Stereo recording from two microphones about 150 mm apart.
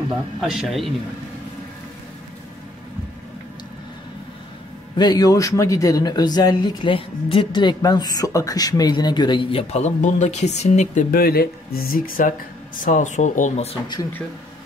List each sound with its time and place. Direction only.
0.4 s speech: centre (ahead or behind)
4.9 s speech: 30° left (ahead or behind); by 11.1 s 50° left (ahead or behind)
11.1 s speech: 85° left; by 13.7 s 55° left (ahead or behind)